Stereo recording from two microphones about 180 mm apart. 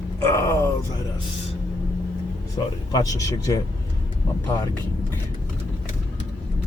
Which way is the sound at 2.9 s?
20° left (ahead or behind).